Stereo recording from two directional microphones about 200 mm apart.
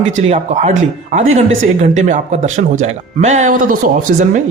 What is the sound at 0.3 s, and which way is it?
Speech, 35° right (ahead or behind).